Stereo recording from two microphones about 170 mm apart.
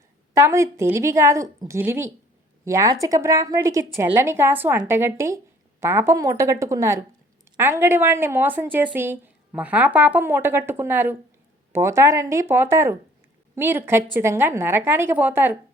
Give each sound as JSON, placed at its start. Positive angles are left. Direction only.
{"t": 0.3, "sound": "speech", "side_deg": -15}